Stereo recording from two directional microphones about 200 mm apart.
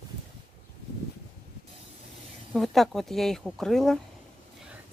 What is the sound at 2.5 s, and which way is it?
Speech, centre (ahead or behind).